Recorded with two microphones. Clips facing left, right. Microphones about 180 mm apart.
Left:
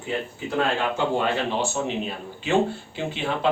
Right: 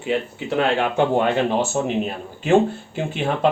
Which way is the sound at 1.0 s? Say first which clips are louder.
Right 5 dB; 55° right (ahead or behind).